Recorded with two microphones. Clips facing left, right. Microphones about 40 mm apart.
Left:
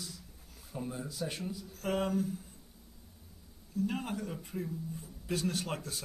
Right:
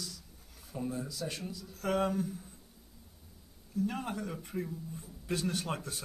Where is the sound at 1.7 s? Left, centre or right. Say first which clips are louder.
Right 1 dB; right.